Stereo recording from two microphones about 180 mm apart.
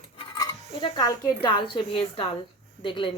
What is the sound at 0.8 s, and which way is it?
A woman's voice, 25° left (ahead or behind).